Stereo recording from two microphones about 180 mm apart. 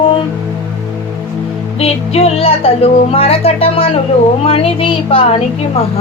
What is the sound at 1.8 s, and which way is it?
Speech, 35° left (ahead or behind).